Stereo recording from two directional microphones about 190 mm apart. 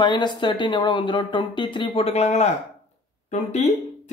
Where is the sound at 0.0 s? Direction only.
25° left (ahead or behind).